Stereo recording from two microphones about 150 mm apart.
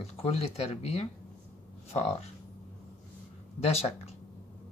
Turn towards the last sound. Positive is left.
turn(degrees=45)  # may be behind; listen again after turning